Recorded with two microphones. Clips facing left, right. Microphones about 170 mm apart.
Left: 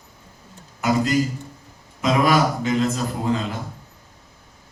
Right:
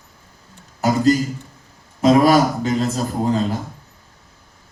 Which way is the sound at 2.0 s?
40° right (ahead or behind).